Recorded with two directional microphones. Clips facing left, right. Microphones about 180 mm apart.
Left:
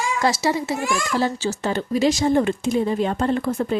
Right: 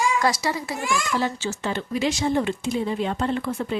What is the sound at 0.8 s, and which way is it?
A child's voice, 40° left (ahead or behind).